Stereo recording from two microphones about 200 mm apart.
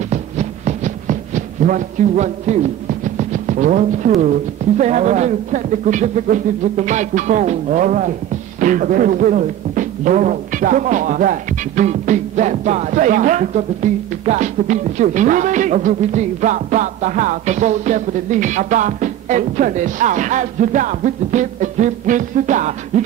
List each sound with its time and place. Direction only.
0.1 s a sound: 35° right (ahead or behind)
3.2 s music: 40° right (ahead or behind)
4.2 s speech: 40° right (ahead or behind)